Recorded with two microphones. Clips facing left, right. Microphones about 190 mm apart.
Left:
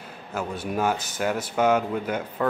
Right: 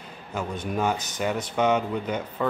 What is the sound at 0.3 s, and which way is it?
Speech, 5° left (ahead or behind).